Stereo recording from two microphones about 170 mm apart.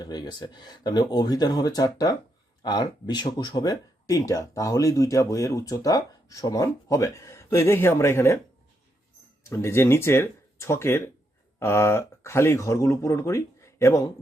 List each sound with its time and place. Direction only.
0.0 s speech: 25° left (ahead or behind)
9.4 s speech: 15° left (ahead or behind)